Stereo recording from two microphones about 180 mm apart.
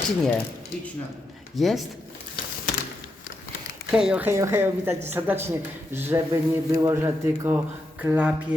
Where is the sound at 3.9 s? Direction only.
5° right (ahead or behind).